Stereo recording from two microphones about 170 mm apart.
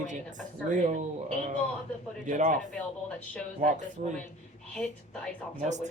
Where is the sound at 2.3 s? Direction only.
50° right (ahead or behind).